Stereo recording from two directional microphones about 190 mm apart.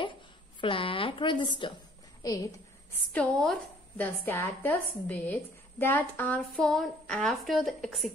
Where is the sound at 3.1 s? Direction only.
5° left (ahead or behind).